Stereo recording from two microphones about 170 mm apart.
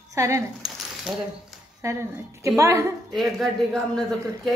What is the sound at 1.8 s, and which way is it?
A woman's voice, 20° right (ahead or behind).